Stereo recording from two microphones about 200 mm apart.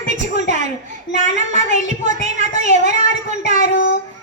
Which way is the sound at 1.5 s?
35° right (ahead or behind).